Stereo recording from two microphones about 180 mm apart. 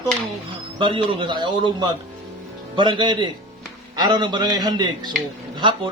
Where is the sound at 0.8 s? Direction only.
30° right (ahead or behind).